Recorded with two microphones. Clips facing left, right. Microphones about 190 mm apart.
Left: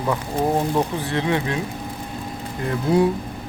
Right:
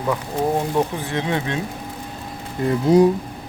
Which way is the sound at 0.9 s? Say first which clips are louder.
Left 1 dB; 15° right (ahead or behind).